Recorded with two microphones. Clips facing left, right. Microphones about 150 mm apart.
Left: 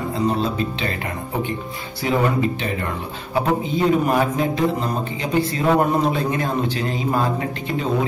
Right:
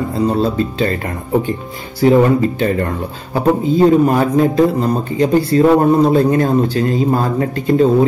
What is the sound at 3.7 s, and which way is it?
A man's voice, 35° right (ahead or behind).